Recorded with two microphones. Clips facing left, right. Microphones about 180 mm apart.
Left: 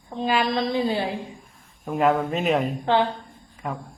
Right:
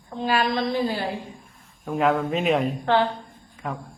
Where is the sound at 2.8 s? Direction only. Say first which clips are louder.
Even; 20° left (ahead or behind).